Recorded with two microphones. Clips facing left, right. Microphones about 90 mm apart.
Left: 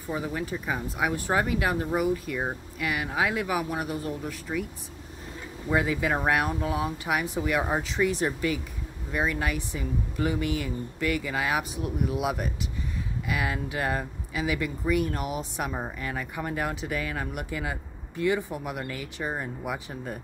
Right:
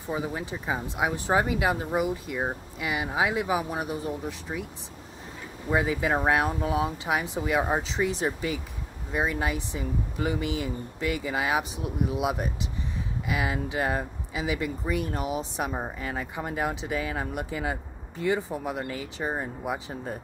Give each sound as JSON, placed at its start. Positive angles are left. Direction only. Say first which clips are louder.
{"t": 0.1, "sound": "speech", "louder": "even", "side_deg": -20}
{"t": 5.7, "sound": "speech", "louder": "even", "side_deg": -25}